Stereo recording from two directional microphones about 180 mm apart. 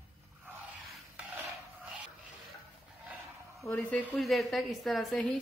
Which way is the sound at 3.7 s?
10° left (ahead or behind).